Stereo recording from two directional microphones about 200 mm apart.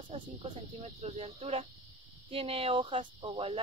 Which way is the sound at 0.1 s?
30° right (ahead or behind).